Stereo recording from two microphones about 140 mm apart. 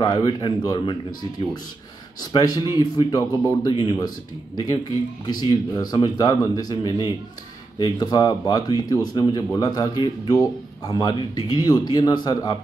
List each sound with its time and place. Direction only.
0.0 s a man's voice: 30° left (ahead or behind)
2.3 s a man's voice: 30° left (ahead or behind)
5.2 s a man's voice: 30° left (ahead or behind)